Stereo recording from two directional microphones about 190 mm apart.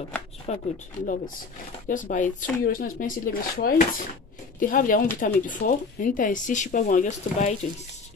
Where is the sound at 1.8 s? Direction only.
45° left (ahead or behind).